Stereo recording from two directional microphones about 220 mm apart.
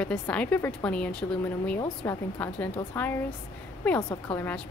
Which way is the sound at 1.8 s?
15° left (ahead or behind).